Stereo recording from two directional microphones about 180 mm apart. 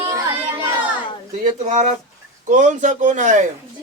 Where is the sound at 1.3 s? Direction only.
45° right (ahead or behind).